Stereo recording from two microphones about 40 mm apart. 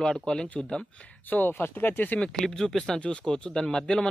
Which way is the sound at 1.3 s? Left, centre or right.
Left.